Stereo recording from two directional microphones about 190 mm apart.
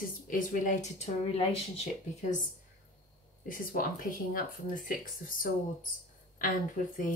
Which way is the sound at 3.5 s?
45° left (ahead or behind).